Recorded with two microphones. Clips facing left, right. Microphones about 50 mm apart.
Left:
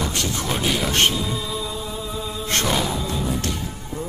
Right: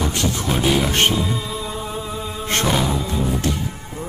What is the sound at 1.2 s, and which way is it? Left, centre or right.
Music, right.